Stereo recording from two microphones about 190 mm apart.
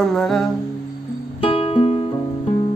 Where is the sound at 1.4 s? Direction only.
30° left (ahead or behind).